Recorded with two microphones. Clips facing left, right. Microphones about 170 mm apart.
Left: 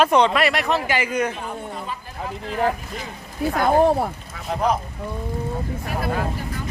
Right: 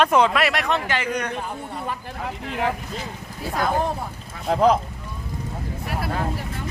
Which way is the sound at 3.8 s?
75° left (ahead or behind).